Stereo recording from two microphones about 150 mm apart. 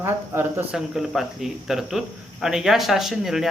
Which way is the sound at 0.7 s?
5° right (ahead or behind).